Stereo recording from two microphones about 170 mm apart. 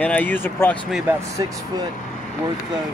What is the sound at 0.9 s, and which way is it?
Speech, 5° right (ahead or behind).